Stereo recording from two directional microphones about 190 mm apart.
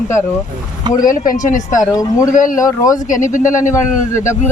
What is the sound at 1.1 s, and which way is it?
Speech, 45° left (ahead or behind).